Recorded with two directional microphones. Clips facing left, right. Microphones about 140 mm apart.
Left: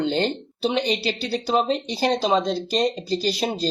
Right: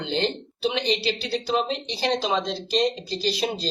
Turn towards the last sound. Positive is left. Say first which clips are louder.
# left 2 dB
turn(degrees=40)  # may be behind; listen again after turning